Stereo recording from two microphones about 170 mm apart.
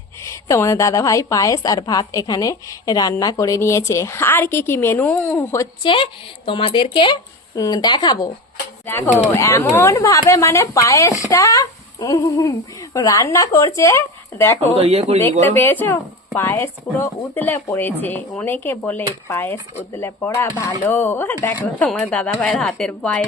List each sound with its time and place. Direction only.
0.2 s speech: 15° left (ahead or behind)
5.8 s speech: 30° left (ahead or behind)
8.9 s speech: 15° left (ahead or behind)
14.8 s speech: 35° right (ahead or behind)
15.4 s speech: 10° left (ahead or behind)